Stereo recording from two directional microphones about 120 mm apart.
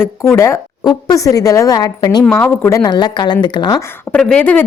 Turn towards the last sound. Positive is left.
turn(degrees=5)  # may be behind; listen again after turning